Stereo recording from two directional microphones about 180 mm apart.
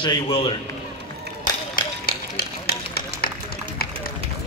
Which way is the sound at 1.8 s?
50° left (ahead or behind).